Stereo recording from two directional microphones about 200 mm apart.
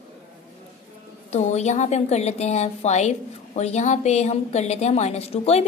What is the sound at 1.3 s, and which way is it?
A woman's voice, 35° left (ahead or behind).